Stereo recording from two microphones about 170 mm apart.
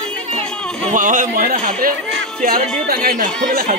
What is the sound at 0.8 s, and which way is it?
Speech, 50° right (ahead or behind).